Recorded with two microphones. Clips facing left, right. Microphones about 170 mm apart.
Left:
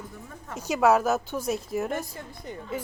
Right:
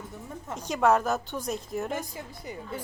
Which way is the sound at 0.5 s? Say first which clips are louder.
Left 2 dB; 5° left (ahead or behind).